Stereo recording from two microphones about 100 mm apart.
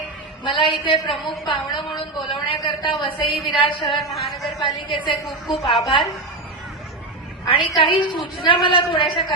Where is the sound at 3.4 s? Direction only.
60° left (ahead or behind).